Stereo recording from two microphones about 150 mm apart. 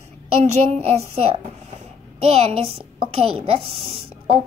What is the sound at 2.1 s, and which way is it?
A woman's voice, 40° right (ahead or behind).